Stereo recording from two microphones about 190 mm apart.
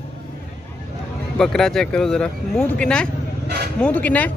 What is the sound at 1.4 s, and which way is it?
Speech, centre (ahead or behind).